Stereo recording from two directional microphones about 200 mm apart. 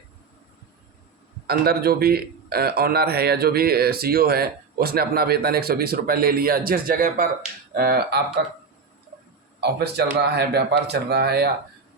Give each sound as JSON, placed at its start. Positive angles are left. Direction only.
{"t": 1.5, "sound": "a man's voice", "side_deg": -50}
{"t": 9.6, "sound": "speech", "side_deg": -55}